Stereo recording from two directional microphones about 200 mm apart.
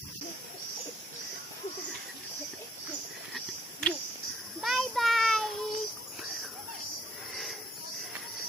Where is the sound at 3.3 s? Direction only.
Centre (ahead or behind).